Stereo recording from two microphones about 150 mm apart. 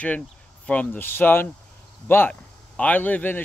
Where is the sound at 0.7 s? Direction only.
10° left (ahead or behind).